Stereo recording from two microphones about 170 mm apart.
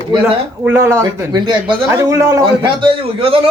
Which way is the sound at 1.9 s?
20° right (ahead or behind).